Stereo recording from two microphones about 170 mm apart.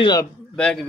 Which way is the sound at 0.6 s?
5° left (ahead or behind).